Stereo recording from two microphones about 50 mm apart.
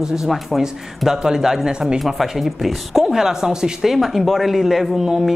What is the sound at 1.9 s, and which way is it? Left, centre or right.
Speech, centre.